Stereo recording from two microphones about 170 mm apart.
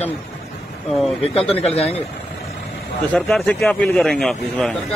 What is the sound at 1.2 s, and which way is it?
Speech, 35° left (ahead or behind).